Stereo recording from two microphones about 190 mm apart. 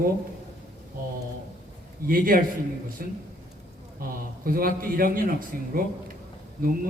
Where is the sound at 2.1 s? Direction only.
50° right (ahead or behind).